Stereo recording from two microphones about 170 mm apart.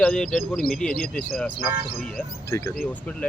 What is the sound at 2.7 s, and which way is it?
Speech, 10° left (ahead or behind).